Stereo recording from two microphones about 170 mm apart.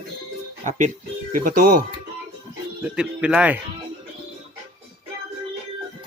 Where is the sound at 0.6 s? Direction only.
45° right (ahead or behind).